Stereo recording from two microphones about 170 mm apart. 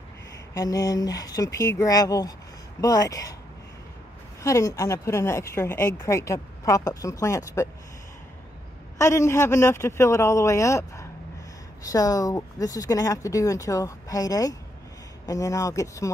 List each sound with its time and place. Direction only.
0.6 s speech: 20° left (ahead or behind)
4.4 s speech: 15° left (ahead or behind)
8.9 s speech: 15° left (ahead or behind)